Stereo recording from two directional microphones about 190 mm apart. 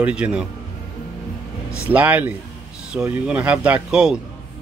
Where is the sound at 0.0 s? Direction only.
5° right (ahead or behind).